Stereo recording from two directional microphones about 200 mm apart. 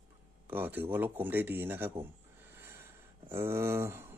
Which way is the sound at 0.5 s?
10° right (ahead or behind).